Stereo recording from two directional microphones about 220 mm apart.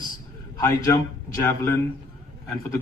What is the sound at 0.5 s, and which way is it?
A man's voice, 15° left (ahead or behind).